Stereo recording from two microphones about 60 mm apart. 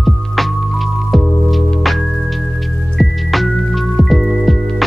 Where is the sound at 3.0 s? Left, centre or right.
Centre.